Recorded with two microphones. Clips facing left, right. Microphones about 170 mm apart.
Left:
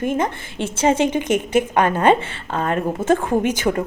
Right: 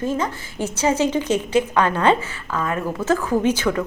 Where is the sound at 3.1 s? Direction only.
25° left (ahead or behind).